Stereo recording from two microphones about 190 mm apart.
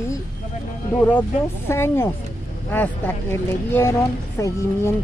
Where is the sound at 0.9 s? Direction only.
10° left (ahead or behind).